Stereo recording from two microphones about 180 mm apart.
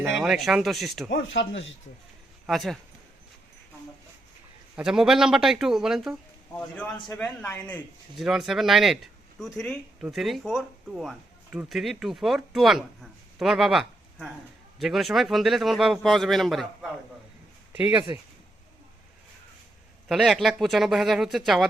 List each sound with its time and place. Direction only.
0.2 s a man's voice: centre (ahead or behind)
1.1 s speech: 90° left
2.5 s a man's voice: centre (ahead or behind)
4.8 s a man's voice: 5° right (ahead or behind)
8.2 s a man's voice: centre (ahead or behind)
18.1 s speech: 20° right (ahead or behind)
20.1 s a man's voice: centre (ahead or behind)